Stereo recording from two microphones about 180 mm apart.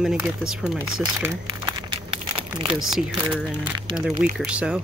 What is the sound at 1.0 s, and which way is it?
Crumpling, 25° right (ahead or behind).